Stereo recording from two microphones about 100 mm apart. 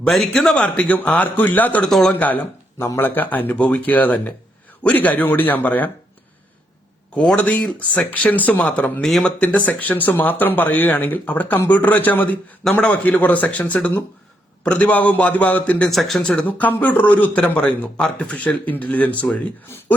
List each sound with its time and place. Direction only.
0.0 s speech: 5° left (ahead or behind)
1.9 s speech: 5° left (ahead or behind)
2.1 s speech: 15° left (ahead or behind)
7.2 s speech: 10° left (ahead or behind)
15.9 s speech: centre (ahead or behind)